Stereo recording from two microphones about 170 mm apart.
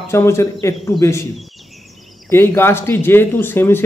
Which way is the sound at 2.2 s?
15° left (ahead or behind).